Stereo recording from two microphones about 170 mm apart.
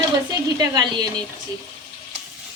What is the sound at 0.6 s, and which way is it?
Speech, 25° right (ahead or behind).